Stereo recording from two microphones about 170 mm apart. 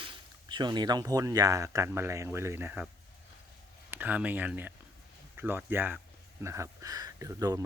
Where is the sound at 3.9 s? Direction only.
10° right (ahead or behind).